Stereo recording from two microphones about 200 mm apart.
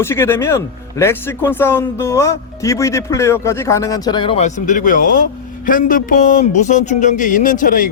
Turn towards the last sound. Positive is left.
turn(degrees=45)  # may be behind; listen again after turning